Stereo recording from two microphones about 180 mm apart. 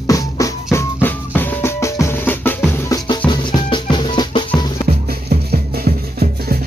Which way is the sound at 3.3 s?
25° left (ahead or behind).